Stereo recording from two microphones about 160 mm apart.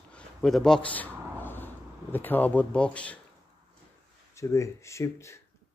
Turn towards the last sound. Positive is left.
turn(degrees=20)  # may be behind; listen again after turning